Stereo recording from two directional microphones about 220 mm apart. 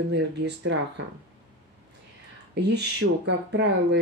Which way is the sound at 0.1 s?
50° right (ahead or behind).